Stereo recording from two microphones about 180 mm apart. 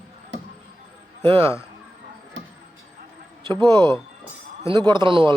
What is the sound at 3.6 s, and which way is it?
Speech, 25° right (ahead or behind).